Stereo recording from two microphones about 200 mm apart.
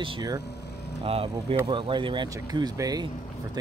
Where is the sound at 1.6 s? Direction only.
25° right (ahead or behind).